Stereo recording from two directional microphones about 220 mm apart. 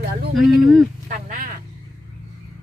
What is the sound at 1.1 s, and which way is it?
Speech, 35° right (ahead or behind).